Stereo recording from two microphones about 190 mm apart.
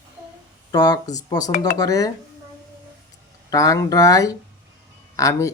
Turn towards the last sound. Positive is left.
turn(degrees=15)  # may be behind; listen again after turning